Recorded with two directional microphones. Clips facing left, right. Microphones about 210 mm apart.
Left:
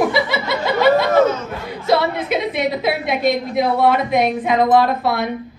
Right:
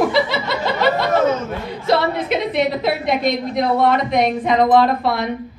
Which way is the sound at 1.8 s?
Centre (ahead or behind).